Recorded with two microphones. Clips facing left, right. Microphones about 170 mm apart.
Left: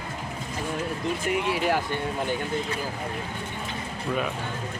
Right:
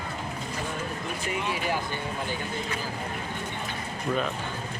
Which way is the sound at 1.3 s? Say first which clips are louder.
Left 4 dB; 70° left (ahead or behind).